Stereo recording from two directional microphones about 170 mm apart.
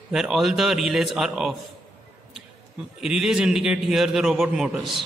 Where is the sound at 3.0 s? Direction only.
5° right (ahead or behind).